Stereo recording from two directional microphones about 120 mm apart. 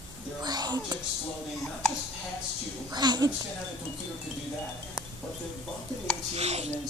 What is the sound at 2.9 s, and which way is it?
Speech, 35° right (ahead or behind).